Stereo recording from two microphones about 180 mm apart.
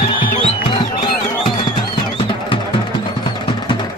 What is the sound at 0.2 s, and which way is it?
Music, 50° left (ahead or behind).